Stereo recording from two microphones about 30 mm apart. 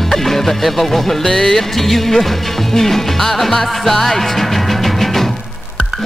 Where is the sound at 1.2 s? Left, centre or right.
Centre.